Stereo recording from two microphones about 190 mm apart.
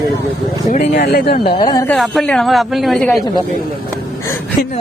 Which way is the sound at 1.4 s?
25° left (ahead or behind).